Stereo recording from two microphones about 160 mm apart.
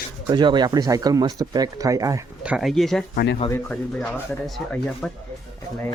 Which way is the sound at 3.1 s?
90° left.